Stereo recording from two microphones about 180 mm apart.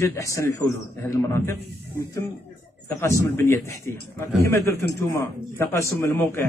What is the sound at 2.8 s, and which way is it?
A man's voice, 15° left (ahead or behind).